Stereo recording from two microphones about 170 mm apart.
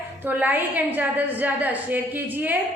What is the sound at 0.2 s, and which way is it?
A woman's voice, 10° right (ahead or behind).